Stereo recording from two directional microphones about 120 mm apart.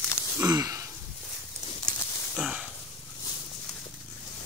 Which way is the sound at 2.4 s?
5° right (ahead or behind).